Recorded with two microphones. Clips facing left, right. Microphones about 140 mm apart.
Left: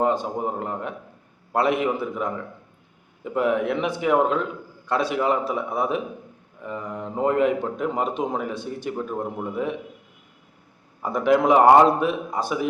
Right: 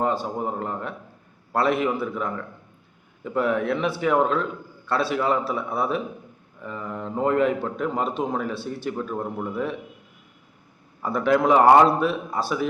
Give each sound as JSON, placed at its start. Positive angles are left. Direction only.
{"t": 0.0, "sound": "a man's voice", "side_deg": 15}
{"t": 11.0, "sound": "a man's voice", "side_deg": 15}